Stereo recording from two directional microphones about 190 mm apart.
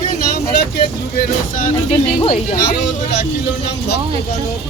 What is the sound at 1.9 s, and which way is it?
Speech, 30° left (ahead or behind).